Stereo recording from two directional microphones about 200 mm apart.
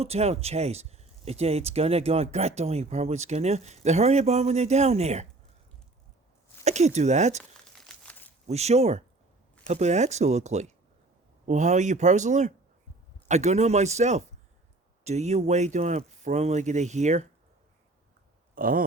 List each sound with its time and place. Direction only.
0.0 s speech: 30° right (ahead or behind)
6.7 s speech: 35° right (ahead or behind)
7.8 s crumpling: 5° left (ahead or behind)
8.4 s speech: 30° right (ahead or behind)
18.5 s a sound: 45° right (ahead or behind)